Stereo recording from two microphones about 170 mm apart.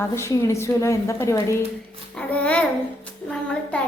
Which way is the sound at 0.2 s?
15° left (ahead or behind).